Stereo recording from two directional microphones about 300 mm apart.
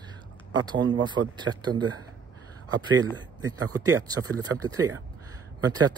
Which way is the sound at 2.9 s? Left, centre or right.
Centre.